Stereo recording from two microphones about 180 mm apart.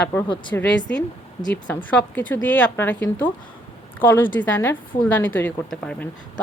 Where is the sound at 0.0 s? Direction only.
10° left (ahead or behind).